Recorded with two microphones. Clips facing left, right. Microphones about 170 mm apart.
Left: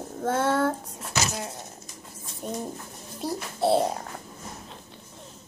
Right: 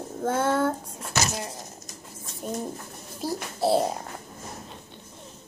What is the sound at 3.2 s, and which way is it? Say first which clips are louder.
Speech: even; centre (ahead or behind).